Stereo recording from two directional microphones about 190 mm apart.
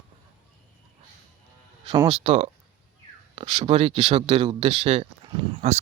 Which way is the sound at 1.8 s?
25° right (ahead or behind).